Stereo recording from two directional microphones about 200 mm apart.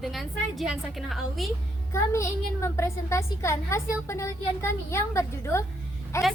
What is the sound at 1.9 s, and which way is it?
A woman's voice, 15° left (ahead or behind).